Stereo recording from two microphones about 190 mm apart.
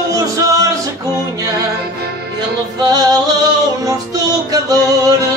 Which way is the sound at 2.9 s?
20° right (ahead or behind).